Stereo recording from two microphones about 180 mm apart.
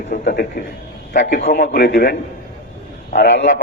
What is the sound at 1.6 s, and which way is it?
Speech, 70° left (ahead or behind).